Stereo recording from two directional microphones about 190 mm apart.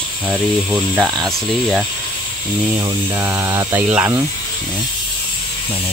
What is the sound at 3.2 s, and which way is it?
Speech, 15° right (ahead or behind).